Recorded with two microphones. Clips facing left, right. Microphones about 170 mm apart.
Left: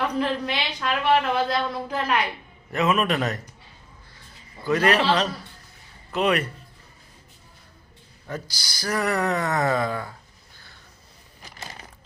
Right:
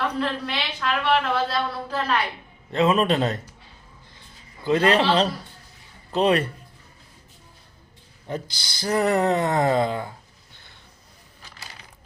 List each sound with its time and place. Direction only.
0.2 s a woman's voice: 15° left (ahead or behind)
2.7 s speech: 30° right (ahead or behind)
4.6 s a man's voice: 25° right (ahead or behind)
8.3 s speech: 25° right (ahead or behind)